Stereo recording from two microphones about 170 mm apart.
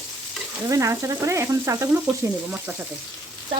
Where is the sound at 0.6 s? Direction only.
20° right (ahead or behind).